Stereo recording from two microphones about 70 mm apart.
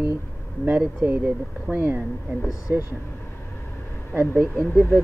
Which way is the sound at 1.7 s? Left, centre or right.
Right.